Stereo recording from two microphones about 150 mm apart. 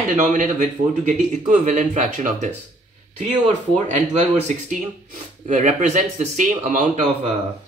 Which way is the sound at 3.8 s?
50° right (ahead or behind).